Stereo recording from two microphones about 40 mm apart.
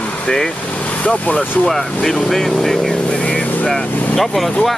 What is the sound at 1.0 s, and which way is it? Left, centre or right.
Speech, left.